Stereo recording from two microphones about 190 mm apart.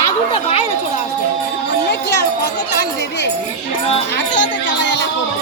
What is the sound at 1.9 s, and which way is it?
Children playing, 60° left (ahead or behind).